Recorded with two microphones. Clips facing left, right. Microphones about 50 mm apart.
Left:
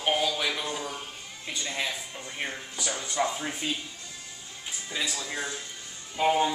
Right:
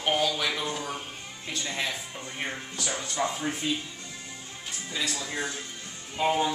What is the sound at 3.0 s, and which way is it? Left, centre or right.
Speech, centre.